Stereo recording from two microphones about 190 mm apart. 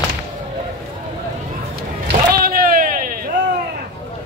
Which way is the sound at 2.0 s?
50° right (ahead or behind).